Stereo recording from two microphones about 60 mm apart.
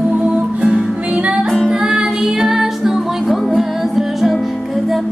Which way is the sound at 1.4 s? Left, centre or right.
Centre.